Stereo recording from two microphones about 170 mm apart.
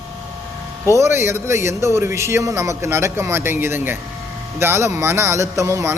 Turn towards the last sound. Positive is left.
turn(degrees=-15)  # may be behind; listen again after turning